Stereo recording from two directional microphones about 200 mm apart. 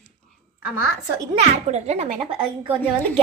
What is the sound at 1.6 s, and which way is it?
Speech, 35° right (ahead or behind).